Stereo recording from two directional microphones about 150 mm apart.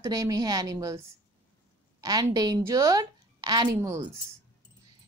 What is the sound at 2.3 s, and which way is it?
Speech, 25° right (ahead or behind).